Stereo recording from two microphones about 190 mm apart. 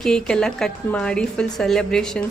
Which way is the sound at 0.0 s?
5° left (ahead or behind).